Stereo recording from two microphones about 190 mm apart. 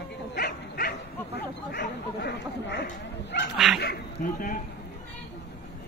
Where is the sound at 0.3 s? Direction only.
55° left (ahead or behind).